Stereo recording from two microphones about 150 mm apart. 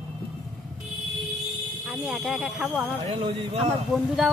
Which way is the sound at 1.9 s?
Centre (ahead or behind).